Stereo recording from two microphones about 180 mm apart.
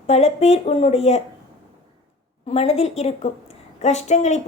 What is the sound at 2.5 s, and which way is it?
A woman's voice, 35° left (ahead or behind).